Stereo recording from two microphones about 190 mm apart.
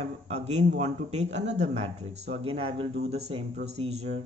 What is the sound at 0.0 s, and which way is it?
Speech, 35° right (ahead or behind).